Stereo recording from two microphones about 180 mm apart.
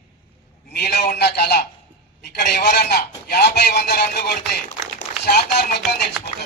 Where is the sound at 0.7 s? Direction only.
65° left (ahead or behind).